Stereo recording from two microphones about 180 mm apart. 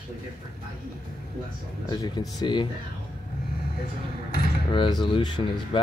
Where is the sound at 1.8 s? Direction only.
20° left (ahead or behind).